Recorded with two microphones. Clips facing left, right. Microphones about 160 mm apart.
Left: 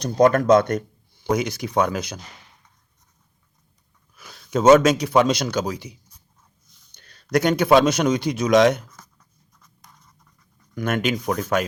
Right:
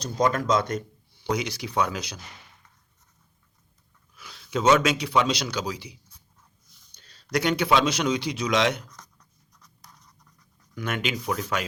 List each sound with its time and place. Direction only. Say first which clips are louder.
0.0 s speech: left 8 dB; 55° left (ahead or behind)
4.1 s a man's voice: left 5 dB; 45° left (ahead or behind)
9.6 s writing: left 1 dB; centre (ahead or behind)
10.8 s speech: left 6 dB; 50° left (ahead or behind)